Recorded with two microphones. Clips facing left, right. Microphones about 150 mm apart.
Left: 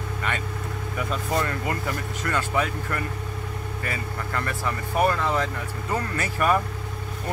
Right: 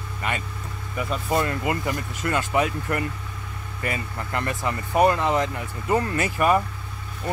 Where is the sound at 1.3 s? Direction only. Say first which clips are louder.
Right 4 dB; 20° right (ahead or behind).